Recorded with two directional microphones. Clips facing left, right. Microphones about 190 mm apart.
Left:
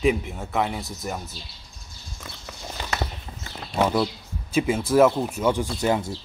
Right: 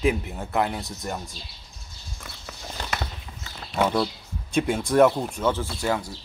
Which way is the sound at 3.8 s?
5° left (ahead or behind).